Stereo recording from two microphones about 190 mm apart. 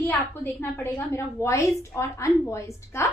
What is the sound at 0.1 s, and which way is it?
A woman's voice, 10° left (ahead or behind).